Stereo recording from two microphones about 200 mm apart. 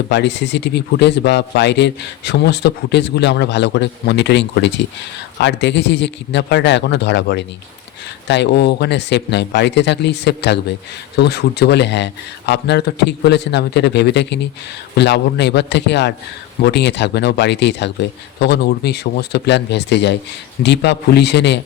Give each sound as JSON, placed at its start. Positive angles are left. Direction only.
{"t": 0.1, "sound": "a man's voice", "side_deg": 60}